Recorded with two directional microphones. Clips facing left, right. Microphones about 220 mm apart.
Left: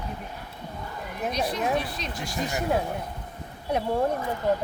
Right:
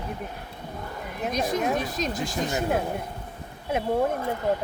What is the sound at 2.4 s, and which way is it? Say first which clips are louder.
Speech: even; centre (ahead or behind).